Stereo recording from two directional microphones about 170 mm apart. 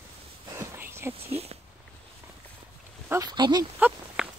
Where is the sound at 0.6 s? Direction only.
15° right (ahead or behind).